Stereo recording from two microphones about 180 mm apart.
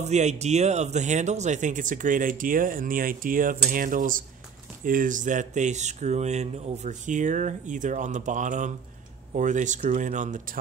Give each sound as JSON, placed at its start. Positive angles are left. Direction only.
{"t": 0.0, "sound": "speech", "side_deg": -40}